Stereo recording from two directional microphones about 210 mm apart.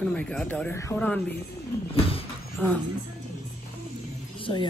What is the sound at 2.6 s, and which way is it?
Speech, 5° left (ahead or behind).